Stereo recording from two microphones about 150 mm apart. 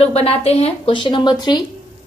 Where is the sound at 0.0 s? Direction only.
40° left (ahead or behind).